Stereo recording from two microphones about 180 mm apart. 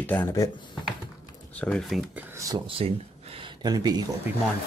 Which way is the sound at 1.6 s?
Centre (ahead or behind).